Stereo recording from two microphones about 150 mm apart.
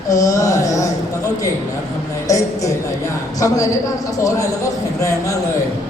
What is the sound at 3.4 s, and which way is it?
A woman's voice, 25° left (ahead or behind).